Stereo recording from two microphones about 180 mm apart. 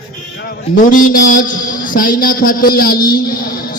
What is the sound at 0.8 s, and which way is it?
A man's voice, 50° left (ahead or behind).